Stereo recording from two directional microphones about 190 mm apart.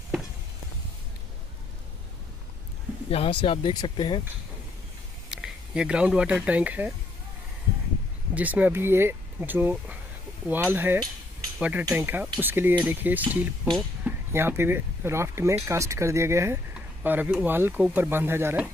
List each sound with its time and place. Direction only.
3.1 s speech: 30° left (ahead or behind)
5.3 s speech: 5° right (ahead or behind)
8.4 s speech: 10° right (ahead or behind)
11.5 s chink: 5° right (ahead or behind)
11.8 s speech: 10° right (ahead or behind)
13.7 s a sound: centre (ahead or behind)
14.3 s speech: 10° right (ahead or behind)